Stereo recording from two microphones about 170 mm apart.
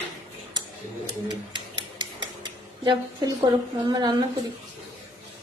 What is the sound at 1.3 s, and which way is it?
Rub, 25° right (ahead or behind).